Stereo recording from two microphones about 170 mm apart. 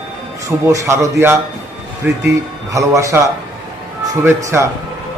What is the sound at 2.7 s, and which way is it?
Speech, 20° right (ahead or behind).